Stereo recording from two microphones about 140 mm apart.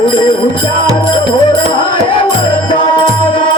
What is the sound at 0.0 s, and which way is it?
Speech, 35° left (ahead or behind).